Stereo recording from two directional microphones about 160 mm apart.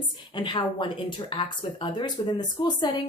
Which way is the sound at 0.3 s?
30° left (ahead or behind).